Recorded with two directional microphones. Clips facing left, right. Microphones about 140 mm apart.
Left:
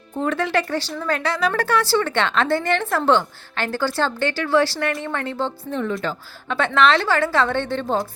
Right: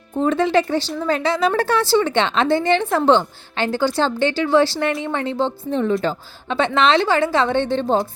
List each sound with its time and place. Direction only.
0.2 s speech: 20° right (ahead or behind)